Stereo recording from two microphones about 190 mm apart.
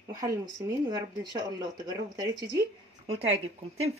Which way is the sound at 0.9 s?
20° right (ahead or behind).